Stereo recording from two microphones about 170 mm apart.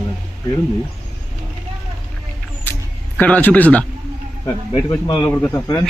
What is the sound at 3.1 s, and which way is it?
Speech, 10° left (ahead or behind).